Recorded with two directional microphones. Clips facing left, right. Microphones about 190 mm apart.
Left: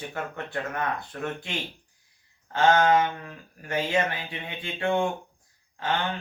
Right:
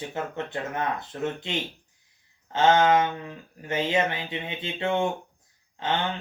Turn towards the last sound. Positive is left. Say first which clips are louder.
# right 1 dB
turn(degrees=-20)  # may be behind; listen again after turning